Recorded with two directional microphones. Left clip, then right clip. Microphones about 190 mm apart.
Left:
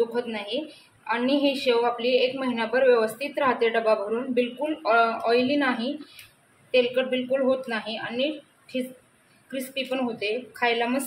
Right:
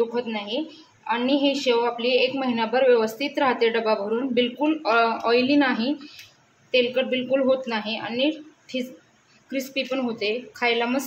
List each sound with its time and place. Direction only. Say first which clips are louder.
0.1 s a woman's voice: right 1 dB; 10° right (ahead or behind)